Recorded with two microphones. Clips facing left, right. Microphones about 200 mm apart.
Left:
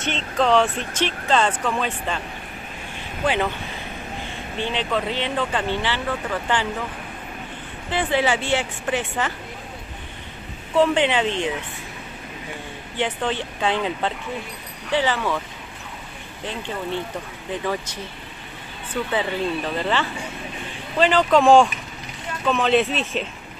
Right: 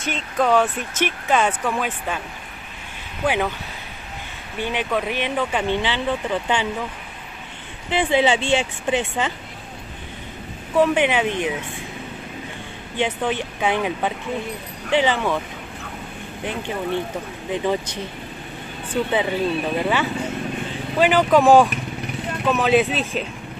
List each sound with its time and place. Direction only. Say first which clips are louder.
0.1 s speech: even; 5° right (ahead or behind)
3.3 s speech: right 1 dB; 10° right (ahead or behind)
4.6 s speech: right 1 dB; 15° right (ahead or behind)
7.9 s speech: right 3 dB; 20° right (ahead or behind)
10.8 s speech: right 1 dB; 10° right (ahead or behind)
12.9 s speech: right 2 dB; 15° right (ahead or behind)
16.4 s speech: right 3 dB; 15° right (ahead or behind)
19.0 s speech: right 1 dB; 15° right (ahead or behind)